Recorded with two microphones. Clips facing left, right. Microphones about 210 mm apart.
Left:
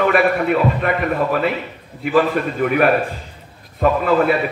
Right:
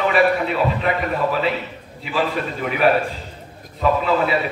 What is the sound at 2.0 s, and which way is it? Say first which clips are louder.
Speech: left 6 dB; 50° left (ahead or behind).